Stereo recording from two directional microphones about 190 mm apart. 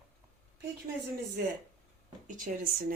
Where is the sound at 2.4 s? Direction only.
45° right (ahead or behind).